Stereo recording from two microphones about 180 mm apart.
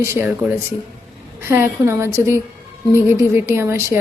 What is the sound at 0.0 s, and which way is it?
Speech, 15° right (ahead or behind).